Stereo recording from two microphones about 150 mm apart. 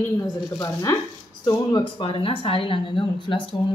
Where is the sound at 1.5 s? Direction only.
30° left (ahead or behind).